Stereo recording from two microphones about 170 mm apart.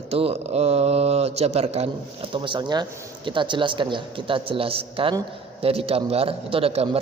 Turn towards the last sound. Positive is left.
turn(degrees=-35)  # may be behind; listen again after turning